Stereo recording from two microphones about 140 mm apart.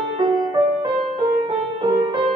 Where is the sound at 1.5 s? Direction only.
30° right (ahead or behind).